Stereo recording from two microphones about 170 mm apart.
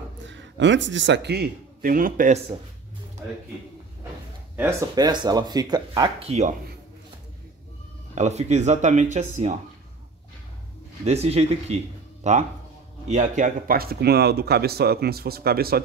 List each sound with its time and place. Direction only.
0.3 s a man's voice: 90° right; by 2.4 s 50° right (ahead or behind)
4.6 s speech: 15° right (ahead or behind)
6.1 s speech: 40° right (ahead or behind)
8.1 s speech: 40° right (ahead or behind)
11.1 s speech: 40° right (ahead or behind); by 15.8 s 65° right (ahead or behind)